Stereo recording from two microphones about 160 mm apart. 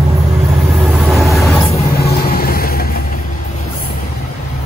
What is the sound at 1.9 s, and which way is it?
Vehicle, 70° left (ahead or behind).